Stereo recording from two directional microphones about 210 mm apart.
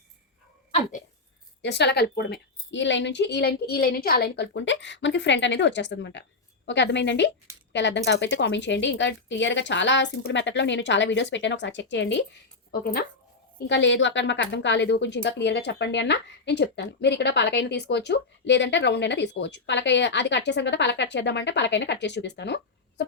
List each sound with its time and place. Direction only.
0.7 s dog: 35° left (ahead or behind)
1.6 s a woman's voice: 55° left (ahead or behind)
13.7 s a woman's voice: 60° left (ahead or behind)